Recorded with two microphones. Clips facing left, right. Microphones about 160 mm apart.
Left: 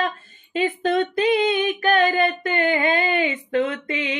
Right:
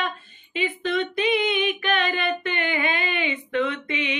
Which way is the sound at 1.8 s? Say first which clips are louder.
Left 6 dB; 40° left (ahead or behind).